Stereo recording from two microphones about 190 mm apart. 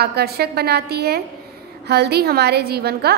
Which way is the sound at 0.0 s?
55° right (ahead or behind).